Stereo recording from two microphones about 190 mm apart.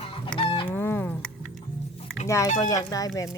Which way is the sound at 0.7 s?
10° left (ahead or behind).